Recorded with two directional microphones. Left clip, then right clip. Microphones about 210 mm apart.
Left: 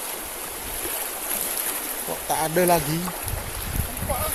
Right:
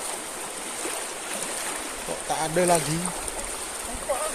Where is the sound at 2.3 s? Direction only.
25° left (ahead or behind).